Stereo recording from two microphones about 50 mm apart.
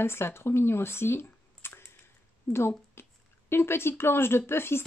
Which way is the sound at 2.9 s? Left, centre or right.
Left.